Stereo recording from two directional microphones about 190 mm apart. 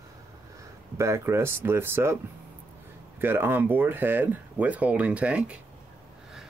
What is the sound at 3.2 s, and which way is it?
Speech, 10° right (ahead or behind).